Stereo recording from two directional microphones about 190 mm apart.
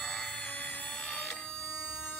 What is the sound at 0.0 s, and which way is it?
Music, 5° left (ahead or behind).